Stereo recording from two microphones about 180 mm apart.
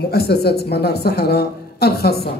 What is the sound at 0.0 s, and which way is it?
Speech, 60° left (ahead or behind).